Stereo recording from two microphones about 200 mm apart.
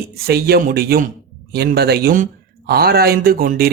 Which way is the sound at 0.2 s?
50° right (ahead or behind).